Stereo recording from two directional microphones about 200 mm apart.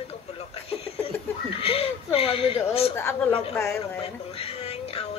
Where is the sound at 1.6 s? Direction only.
30° left (ahead or behind).